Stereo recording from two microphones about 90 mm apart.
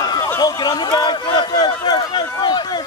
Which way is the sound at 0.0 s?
50° left (ahead or behind).